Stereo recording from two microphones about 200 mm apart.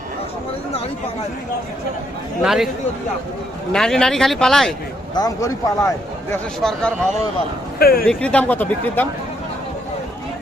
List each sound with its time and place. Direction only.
2.4 s speech: centre (ahead or behind)
3.7 s speech: 5° left (ahead or behind)
5.1 s speech: 15° left (ahead or behind)
6.6 s speech: centre (ahead or behind)
7.8 s speech: 50° left (ahead or behind)
8.0 s speech: 5° left (ahead or behind)